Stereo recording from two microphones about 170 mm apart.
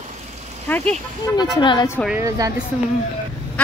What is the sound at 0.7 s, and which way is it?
Speech, 10° left (ahead or behind).